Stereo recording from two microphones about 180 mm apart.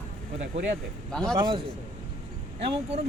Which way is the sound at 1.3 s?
25° right (ahead or behind).